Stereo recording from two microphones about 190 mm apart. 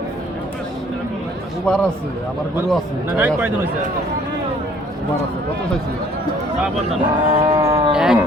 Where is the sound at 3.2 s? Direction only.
10° right (ahead or behind).